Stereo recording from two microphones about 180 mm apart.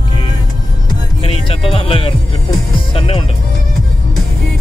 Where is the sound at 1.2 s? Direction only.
30° left (ahead or behind).